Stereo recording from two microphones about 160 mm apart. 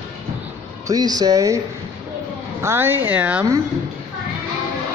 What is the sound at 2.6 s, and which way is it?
Speech, 15° right (ahead or behind).